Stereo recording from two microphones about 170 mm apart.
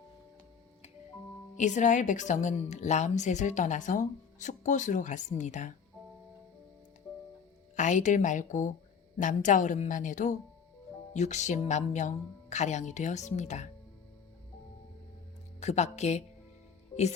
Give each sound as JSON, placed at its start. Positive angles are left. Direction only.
{"t": 1.5, "sound": "a woman's voice", "side_deg": 45}
{"t": 7.8, "sound": "a woman's voice", "side_deg": 45}
{"t": 15.6, "sound": "a woman's voice", "side_deg": 40}